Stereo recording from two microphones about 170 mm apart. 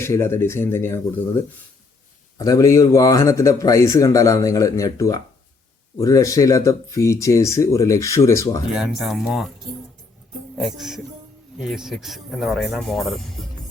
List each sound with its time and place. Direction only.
0.0 s speech: 15° left (ahead or behind)
2.4 s speech: 20° left (ahead or behind)
8.7 s speech: centre (ahead or behind)
10.5 s speech: centre (ahead or behind)